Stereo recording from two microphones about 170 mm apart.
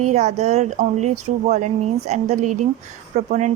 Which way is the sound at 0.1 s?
40° right (ahead or behind).